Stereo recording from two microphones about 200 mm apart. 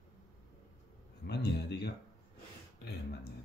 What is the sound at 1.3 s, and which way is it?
Speech, 55° left (ahead or behind).